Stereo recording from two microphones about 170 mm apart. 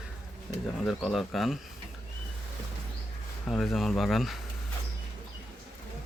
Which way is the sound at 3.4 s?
Centre (ahead or behind).